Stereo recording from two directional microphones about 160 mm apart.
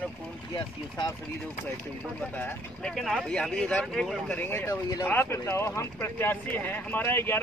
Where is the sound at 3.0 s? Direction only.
5° left (ahead or behind).